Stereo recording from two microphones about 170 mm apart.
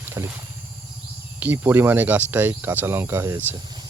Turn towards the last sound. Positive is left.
turn(degrees=-15)  # may be behind; listen again after turning